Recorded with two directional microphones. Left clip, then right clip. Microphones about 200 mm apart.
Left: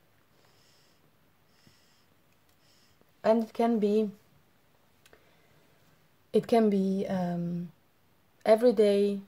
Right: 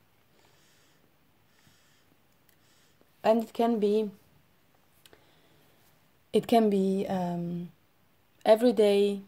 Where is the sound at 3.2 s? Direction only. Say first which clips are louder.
Right 1 dB; 30° right (ahead or behind).